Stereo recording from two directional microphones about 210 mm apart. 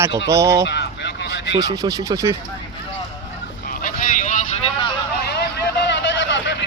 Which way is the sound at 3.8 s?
40° left (ahead or behind).